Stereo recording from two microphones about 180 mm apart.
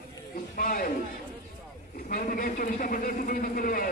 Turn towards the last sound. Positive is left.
turn(degrees=50)  # may be behind; listen again after turning